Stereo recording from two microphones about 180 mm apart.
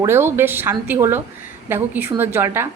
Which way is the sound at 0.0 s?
15° right (ahead or behind).